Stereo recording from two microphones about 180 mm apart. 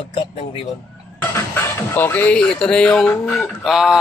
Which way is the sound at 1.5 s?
10° left (ahead or behind).